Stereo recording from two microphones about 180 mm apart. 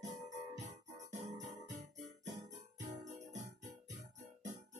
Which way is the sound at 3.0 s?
40° right (ahead or behind).